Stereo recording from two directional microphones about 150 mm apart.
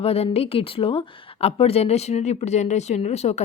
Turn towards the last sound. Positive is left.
turn(degrees=45)  # may be behind; listen again after turning